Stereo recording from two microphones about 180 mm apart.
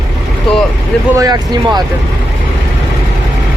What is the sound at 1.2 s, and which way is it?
Speech, 20° right (ahead or behind).